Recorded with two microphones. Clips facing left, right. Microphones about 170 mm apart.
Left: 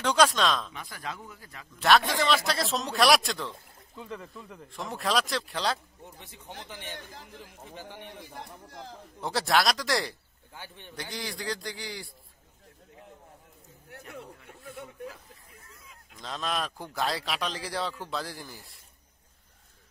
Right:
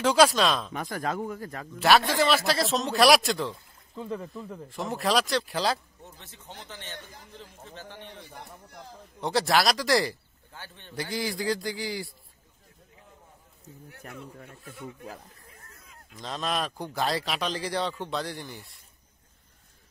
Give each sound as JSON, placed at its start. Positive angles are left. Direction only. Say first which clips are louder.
{"t": 0.0, "sound": "speech", "louder": "right 3 dB", "side_deg": -5}
{"t": 0.7, "sound": "speech", "louder": "right 8 dB", "side_deg": -45}
{"t": 1.8, "sound": "speech", "louder": "right 2 dB", "side_deg": -5}
{"t": 6.0, "sound": "a man's voice", "louder": "left 1 dB", "side_deg": 15}
{"t": 9.2, "sound": "speech", "louder": "right 2 dB", "side_deg": 0}
{"t": 10.5, "sound": "speech", "louder": "even", "side_deg": 15}
{"t": 11.0, "sound": "speech", "louder": "right 6 dB", "side_deg": -5}
{"t": 15.5, "sound": "a sound", "louder": "even", "side_deg": -40}
{"t": 16.2, "sound": "speech", "louder": "right 2 dB", "side_deg": 0}